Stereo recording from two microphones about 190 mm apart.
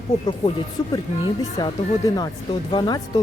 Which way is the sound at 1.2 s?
20° left (ahead or behind).